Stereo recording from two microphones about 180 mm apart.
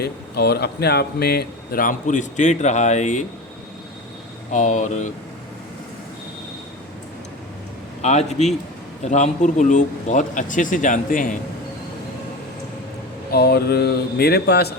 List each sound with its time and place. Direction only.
0.0 s speech: 65° left (ahead or behind); by 3.2 s 40° left (ahead or behind)
4.5 s speech: 45° left (ahead or behind)
8.0 s a man's voice: 40° left (ahead or behind)
13.3 s speech: 60° left (ahead or behind)